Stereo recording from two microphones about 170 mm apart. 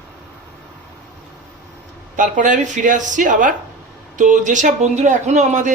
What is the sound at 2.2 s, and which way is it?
A man's voice, 50° right (ahead or behind).